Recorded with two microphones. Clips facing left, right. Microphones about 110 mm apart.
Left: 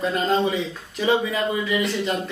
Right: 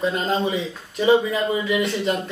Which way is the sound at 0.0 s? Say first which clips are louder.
Left 1 dB; centre (ahead or behind).